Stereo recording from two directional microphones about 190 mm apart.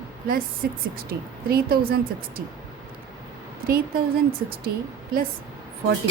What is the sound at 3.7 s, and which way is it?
Speech, 50° right (ahead or behind).